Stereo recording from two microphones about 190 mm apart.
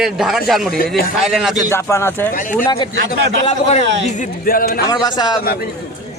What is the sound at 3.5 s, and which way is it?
Speech, 35° left (ahead or behind).